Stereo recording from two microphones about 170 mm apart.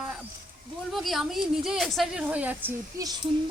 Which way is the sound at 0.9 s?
Centre (ahead or behind).